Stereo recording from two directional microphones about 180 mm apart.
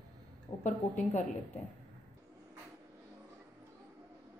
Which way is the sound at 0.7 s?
40° left (ahead or behind).